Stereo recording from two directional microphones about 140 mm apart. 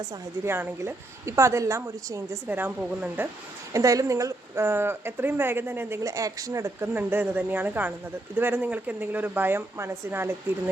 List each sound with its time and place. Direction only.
0.4 s a woman's voice: 15° right (ahead or behind)